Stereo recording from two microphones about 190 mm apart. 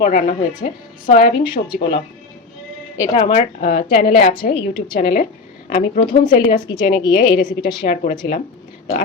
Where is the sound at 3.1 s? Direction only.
30° left (ahead or behind).